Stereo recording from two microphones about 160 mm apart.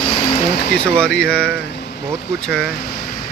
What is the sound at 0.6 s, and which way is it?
Speech, 90° left.